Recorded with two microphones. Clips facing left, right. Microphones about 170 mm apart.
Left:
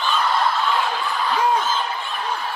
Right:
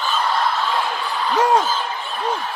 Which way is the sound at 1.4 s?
80° right.